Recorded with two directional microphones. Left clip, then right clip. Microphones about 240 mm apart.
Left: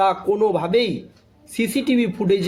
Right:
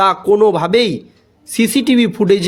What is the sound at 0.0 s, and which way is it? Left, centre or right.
A man's voice, right.